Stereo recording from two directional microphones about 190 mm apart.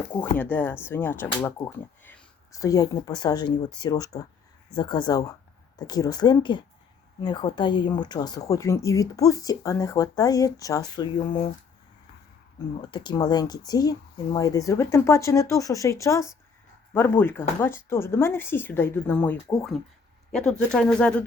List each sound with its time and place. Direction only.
0.2 s speech: 10° left (ahead or behind)
12.5 s speech: 20° left (ahead or behind); by 21.2 s 5° left (ahead or behind)